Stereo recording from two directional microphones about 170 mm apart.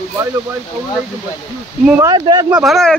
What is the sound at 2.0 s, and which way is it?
Speech, 25° right (ahead or behind).